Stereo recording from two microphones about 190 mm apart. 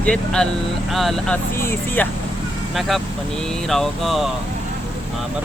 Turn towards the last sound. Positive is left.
turn(degrees=0)  # may be behind; listen again after turning